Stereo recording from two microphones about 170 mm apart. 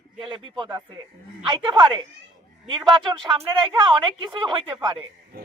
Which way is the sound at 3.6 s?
30° right (ahead or behind).